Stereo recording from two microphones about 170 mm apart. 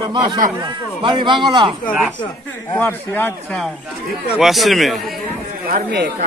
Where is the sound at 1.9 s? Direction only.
5° left (ahead or behind).